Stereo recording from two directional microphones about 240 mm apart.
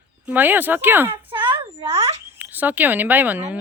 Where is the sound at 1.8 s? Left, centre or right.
Right.